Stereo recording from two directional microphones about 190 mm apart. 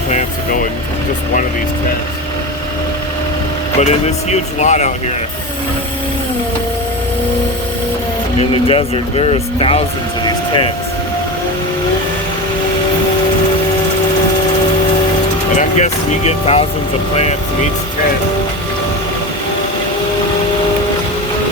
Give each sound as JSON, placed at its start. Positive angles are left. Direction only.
{"t": 0.1, "sound": "speech", "side_deg": 40}
{"t": 3.8, "sound": "speech", "side_deg": 35}
{"t": 8.4, "sound": "speech", "side_deg": 30}
{"t": 10.2, "sound": "vehicle", "side_deg": 25}
{"t": 15.5, "sound": "speech", "side_deg": 35}